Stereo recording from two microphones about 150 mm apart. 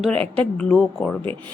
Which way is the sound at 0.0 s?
5° left (ahead or behind).